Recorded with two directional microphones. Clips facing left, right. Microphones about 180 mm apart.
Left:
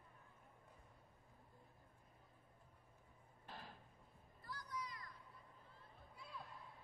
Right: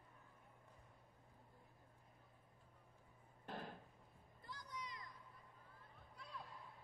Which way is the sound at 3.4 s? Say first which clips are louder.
Right 6 dB; 55° right (ahead or behind).